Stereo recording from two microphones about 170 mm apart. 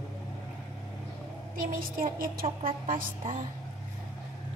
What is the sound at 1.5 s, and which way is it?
A woman's voice, 55° right (ahead or behind).